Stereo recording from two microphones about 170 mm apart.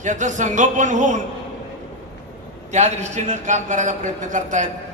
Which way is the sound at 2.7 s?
45° right (ahead or behind).